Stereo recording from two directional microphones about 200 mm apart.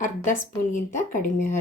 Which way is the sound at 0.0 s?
40° left (ahead or behind).